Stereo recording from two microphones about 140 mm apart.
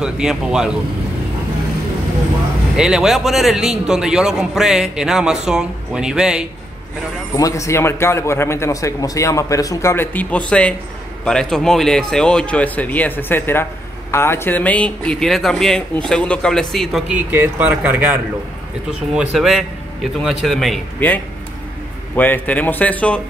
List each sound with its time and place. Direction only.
0.0 s speech: 5° right (ahead or behind)
2.8 s speech: 5° right (ahead or behind)
7.3 s speech: 25° left (ahead or behind); by 17.0 s centre (ahead or behind)
17.3 s speech: 15° right (ahead or behind)
19.1 s a man's voice: 5° right (ahead or behind)